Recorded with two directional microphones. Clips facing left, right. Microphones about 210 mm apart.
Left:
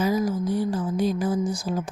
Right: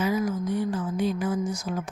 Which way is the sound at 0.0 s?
35° left (ahead or behind).